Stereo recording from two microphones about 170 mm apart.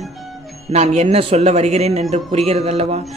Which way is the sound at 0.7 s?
40° right (ahead or behind).